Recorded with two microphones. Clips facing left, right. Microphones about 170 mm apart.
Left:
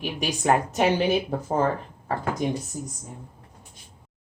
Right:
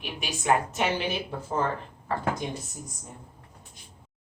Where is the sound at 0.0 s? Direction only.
40° left (ahead or behind).